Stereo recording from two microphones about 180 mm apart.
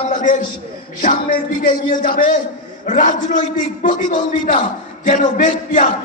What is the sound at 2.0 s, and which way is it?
A man's voice, 50° left (ahead or behind).